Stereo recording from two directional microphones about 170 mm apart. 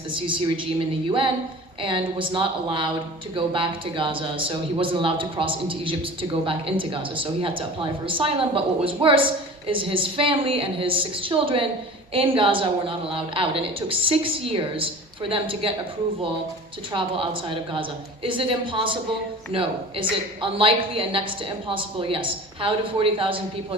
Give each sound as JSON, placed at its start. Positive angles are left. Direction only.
{"t": 0.1, "sound": "a woman's voice", "side_deg": -30}
{"t": 16.9, "sound": "a woman's voice", "side_deg": -30}